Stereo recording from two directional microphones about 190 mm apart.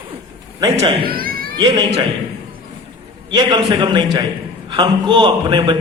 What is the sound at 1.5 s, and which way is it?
Speech, 20° right (ahead or behind).